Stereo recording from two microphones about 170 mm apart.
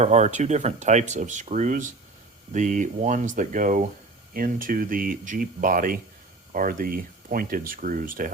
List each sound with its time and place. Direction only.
0.0 s speech: 40° right (ahead or behind)